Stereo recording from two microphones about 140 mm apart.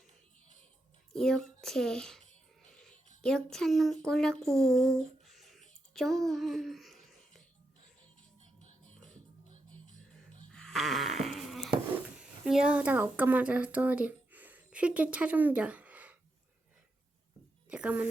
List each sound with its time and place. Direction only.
1.1 s a child's voice: 5° left (ahead or behind)
2.6 s cat: 5° left (ahead or behind)
3.2 s speech: 5° left (ahead or behind)
5.2 s a sound: centre (ahead or behind)
10.5 s a sound: 5° left (ahead or behind)
12.2 s speech: 5° right (ahead or behind)
17.7 s a woman's voice: 10° right (ahead or behind)